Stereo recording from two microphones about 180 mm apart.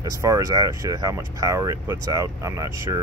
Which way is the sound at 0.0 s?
20° right (ahead or behind).